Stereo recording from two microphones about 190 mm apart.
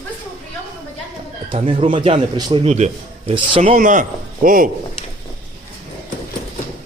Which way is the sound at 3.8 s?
45° right (ahead or behind).